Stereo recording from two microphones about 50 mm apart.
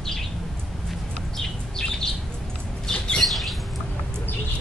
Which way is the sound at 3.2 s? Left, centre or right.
Centre.